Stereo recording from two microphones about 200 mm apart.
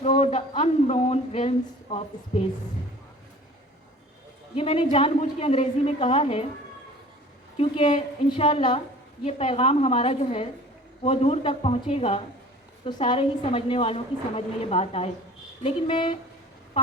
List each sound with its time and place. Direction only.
0.0 s a sound: 30° left (ahead or behind)
4.5 s a woman's voice: 25° left (ahead or behind)
7.6 s a woman's voice: 30° left (ahead or behind)